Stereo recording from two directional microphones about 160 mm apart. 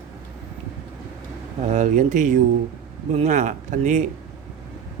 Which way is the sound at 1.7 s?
45° right (ahead or behind).